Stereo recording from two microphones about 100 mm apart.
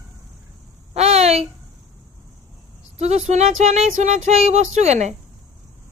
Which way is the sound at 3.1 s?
90° right.